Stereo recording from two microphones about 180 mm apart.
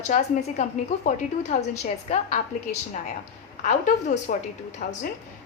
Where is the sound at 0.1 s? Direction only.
40° left (ahead or behind).